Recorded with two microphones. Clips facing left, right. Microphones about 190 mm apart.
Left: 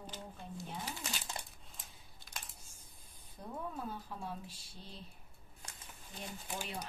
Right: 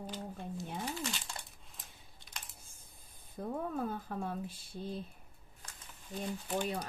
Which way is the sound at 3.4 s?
75° right (ahead or behind).